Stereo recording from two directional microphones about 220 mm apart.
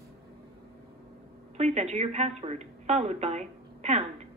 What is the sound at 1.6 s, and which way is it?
Speech, 30° right (ahead or behind).